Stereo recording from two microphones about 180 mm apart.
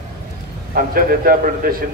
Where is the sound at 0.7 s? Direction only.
55° right (ahead or behind).